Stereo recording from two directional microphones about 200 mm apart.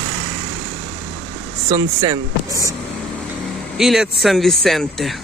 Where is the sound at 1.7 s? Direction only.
15° right (ahead or behind).